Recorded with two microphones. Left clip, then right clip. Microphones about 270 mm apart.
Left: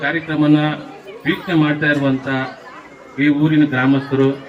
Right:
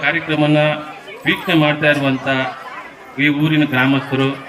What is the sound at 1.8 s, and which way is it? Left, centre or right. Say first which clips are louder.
A man's voice: right 2 dB; centre.